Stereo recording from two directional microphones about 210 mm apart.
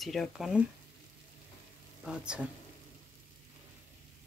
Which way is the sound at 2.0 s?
5° right (ahead or behind).